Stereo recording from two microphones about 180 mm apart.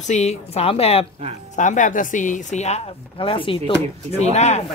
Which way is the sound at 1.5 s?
45° left (ahead or behind).